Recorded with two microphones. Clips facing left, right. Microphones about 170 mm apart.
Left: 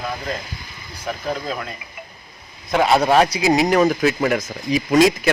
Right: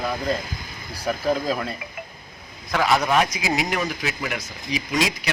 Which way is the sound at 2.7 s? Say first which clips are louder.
Left 5 dB; 25° left (ahead or behind).